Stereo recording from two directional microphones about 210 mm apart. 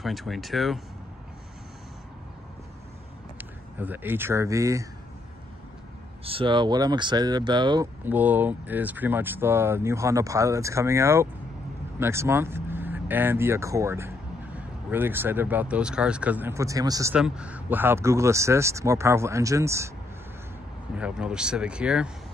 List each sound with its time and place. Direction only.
0.0 s speech: centre (ahead or behind)
3.3 s speech: 10° right (ahead or behind)
6.2 s speech: 25° right (ahead or behind)
8.0 s speech: 10° right (ahead or behind)
17.1 s speech: 5° right (ahead or behind)
20.9 s speech: 5° right (ahead or behind)